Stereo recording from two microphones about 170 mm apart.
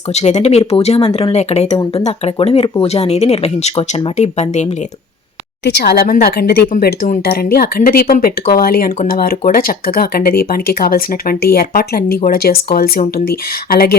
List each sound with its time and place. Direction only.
0.1 s speech: 40° left (ahead or behind)
5.6 s speech: 70° left (ahead or behind)